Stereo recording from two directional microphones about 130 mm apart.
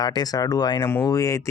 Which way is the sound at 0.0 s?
30° left (ahead or behind).